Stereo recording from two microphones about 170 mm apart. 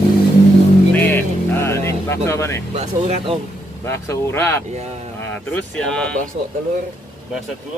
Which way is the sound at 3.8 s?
15° left (ahead or behind).